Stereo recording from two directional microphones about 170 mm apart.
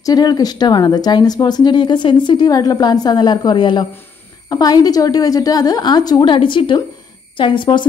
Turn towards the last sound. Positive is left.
turn(degrees=30)  # may be behind; listen again after turning